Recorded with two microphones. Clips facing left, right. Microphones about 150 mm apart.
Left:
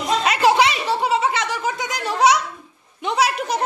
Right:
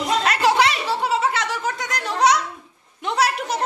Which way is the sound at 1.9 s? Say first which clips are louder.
Left 1 dB; 5° left (ahead or behind).